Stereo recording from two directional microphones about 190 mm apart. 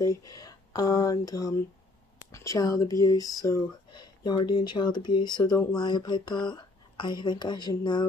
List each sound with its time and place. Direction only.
0.0 s speech: 20° left (ahead or behind)